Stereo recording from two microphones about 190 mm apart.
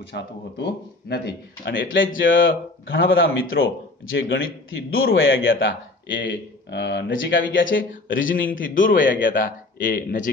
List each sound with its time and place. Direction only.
0.1 s speech: 60° left (ahead or behind); by 7.6 s 80° left
7.6 s a man's voice: 45° left (ahead or behind)
8.1 s speech: 85° left
8.4 s a man's voice: 45° left (ahead or behind)